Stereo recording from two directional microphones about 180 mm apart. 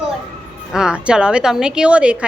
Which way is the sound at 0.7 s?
5° right (ahead or behind).